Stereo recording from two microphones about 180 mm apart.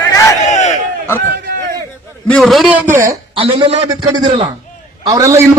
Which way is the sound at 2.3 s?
Centre (ahead or behind).